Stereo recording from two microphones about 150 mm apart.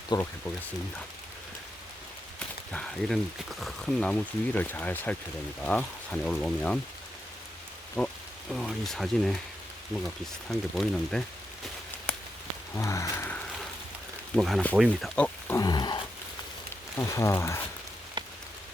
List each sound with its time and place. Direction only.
0.1 s speech: 25° left (ahead or behind)
2.7 s speech: 5° left (ahead or behind)
8.0 s speech: centre (ahead or behind)
10.5 s speech: 5° left (ahead or behind)
12.7 s a sound: 20° left (ahead or behind)
14.3 s speech: centre (ahead or behind)
15.5 s a sound: 25° left (ahead or behind)
17.0 s speech: 20° left (ahead or behind)
18.2 s rain on surface: 30° right (ahead or behind)